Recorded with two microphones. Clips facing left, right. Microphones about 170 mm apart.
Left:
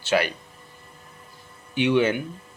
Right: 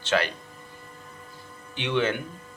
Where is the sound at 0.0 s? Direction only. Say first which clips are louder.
Left 2 dB; 10° left (ahead or behind).